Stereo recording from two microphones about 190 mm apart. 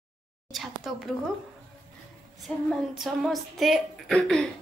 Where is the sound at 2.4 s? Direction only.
Centre (ahead or behind).